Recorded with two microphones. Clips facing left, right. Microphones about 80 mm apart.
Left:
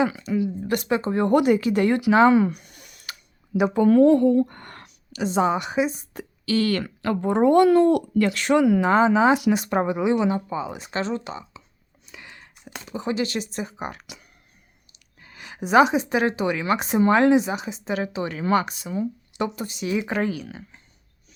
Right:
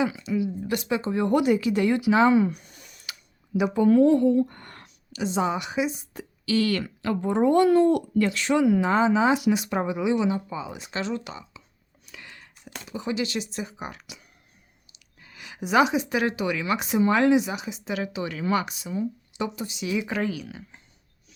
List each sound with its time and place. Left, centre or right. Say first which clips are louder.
0.0 s speech: left 3 dB; left
12.0 s a sound: left 1 dB; left
12.9 s a woman's voice: left 3 dB; left
19.5 s speech: left 2 dB; left